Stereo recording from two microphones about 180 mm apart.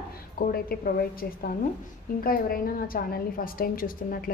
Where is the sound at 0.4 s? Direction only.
55° left (ahead or behind).